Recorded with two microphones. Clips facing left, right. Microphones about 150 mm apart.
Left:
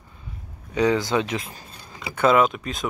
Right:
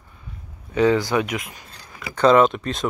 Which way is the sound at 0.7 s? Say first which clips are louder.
Right 2 dB; 20° left (ahead or behind).